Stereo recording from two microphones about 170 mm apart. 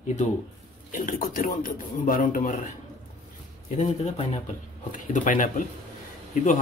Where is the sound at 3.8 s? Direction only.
40° left (ahead or behind).